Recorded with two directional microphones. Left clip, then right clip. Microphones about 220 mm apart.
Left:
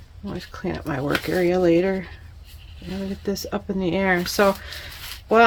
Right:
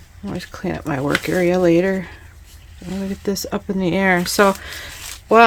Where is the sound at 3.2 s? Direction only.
30° right (ahead or behind).